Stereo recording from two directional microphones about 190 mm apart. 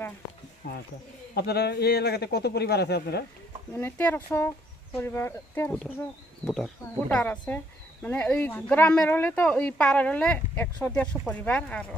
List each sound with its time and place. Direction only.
0.6 s a man's voice: 65° left (ahead or behind)
3.7 s speech: 10° left (ahead or behind)